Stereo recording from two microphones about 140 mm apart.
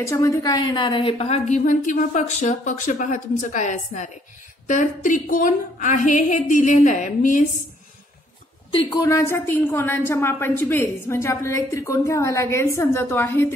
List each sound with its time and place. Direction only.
0.0 s a woman's voice: 20° left (ahead or behind); by 7.4 s 65° left (ahead or behind)
8.7 s a woman's voice: 35° left (ahead or behind)
9.0 s a woman's voice: 20° left (ahead or behind)